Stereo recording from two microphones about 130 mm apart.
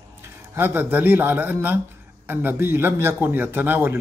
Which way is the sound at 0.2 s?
15° right (ahead or behind).